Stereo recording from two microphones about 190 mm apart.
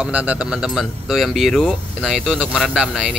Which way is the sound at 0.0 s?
5° right (ahead or behind).